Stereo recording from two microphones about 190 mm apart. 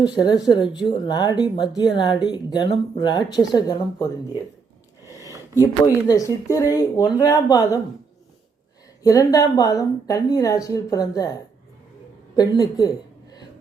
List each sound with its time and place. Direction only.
0.0 s speech: 20° left (ahead or behind)
5.0 s a sound: 20° left (ahead or behind)
5.5 s speech: 20° left (ahead or behind)
9.0 s speech: 20° left (ahead or behind)
12.4 s speech: 20° left (ahead or behind)